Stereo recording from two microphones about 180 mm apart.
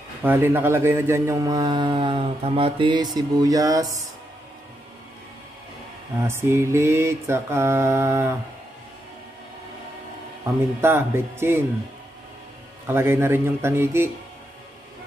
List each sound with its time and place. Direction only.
0.2 s speech: 10° right (ahead or behind)
6.2 s mantra: 15° right (ahead or behind)
10.8 s mantra: 10° right (ahead or behind)
12.8 s mantra: 15° right (ahead or behind)